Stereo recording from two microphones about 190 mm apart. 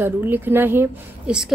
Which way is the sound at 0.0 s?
10° right (ahead or behind).